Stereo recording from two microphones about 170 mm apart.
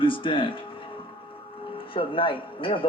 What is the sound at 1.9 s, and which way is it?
Speech, 30° left (ahead or behind).